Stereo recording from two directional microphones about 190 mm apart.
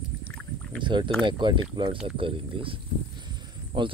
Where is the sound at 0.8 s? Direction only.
25° right (ahead or behind).